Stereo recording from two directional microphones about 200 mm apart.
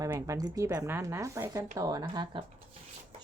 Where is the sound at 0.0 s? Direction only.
15° right (ahead or behind).